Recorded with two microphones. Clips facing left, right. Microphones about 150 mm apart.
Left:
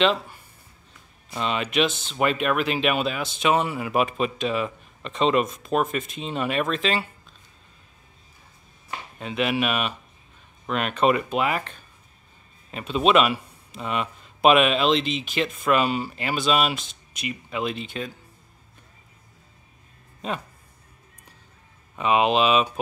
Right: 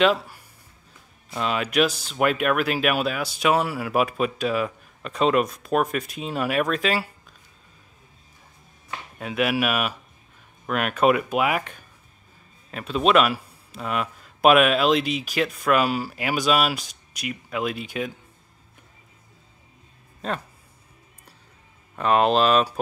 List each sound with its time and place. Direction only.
0.0 s speech: 5° right (ahead or behind)
9.2 s speech: 5° right (ahead or behind)
12.7 s speech: centre (ahead or behind)
21.9 s speech: 5° left (ahead or behind)